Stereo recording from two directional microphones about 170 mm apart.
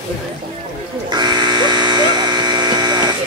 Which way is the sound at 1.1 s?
25° right (ahead or behind).